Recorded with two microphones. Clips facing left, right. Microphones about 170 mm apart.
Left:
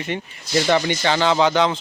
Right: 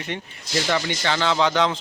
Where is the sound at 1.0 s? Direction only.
20° left (ahead or behind); by 1.8 s 5° left (ahead or behind).